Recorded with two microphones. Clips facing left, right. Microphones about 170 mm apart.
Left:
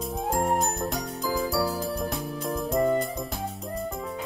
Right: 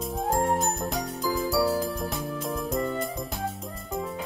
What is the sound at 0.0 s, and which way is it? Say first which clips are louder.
Jingle: right 1 dB; centre (ahead or behind).